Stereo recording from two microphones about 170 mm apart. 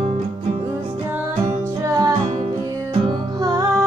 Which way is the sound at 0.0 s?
40° right (ahead or behind).